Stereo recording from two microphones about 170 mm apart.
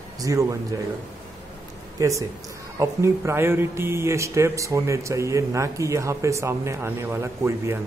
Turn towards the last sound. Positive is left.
turn(degrees=-15)  # may be behind; listen again after turning